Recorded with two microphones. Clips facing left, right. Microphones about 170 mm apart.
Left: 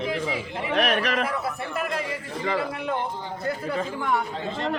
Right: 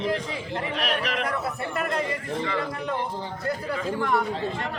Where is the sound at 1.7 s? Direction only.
5° left (ahead or behind).